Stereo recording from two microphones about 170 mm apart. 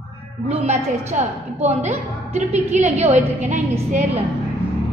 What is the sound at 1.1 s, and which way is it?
A woman's voice, 40° right (ahead or behind).